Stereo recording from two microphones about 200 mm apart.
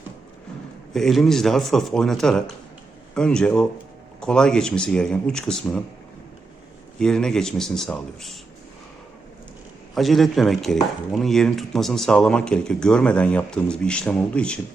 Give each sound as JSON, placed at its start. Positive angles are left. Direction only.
{"t": 0.9, "sound": "speech", "side_deg": 0}
{"t": 7.0, "sound": "speech", "side_deg": 5}
{"t": 9.9, "sound": "speech", "side_deg": 0}